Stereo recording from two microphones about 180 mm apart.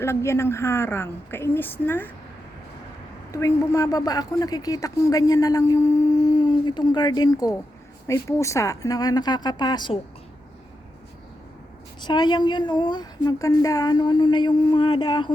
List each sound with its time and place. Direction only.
0.0 s a woman's voice: 15° left (ahead or behind)
3.3 s speech: 15° left (ahead or behind)
12.0 s speech: 25° left (ahead or behind)